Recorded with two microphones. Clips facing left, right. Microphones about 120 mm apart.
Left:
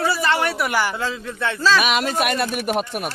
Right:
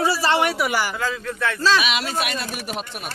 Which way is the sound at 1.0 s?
30° left (ahead or behind).